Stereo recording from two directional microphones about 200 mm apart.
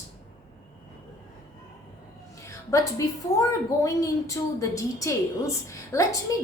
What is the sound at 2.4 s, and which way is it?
A woman's voice, 15° left (ahead or behind).